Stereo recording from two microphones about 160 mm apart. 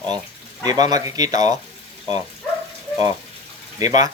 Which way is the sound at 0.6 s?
25° right (ahead or behind).